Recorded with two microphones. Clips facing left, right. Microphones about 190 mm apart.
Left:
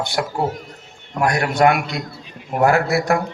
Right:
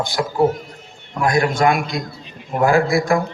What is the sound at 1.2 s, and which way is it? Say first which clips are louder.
A man's voice: even; 70° left (ahead or behind).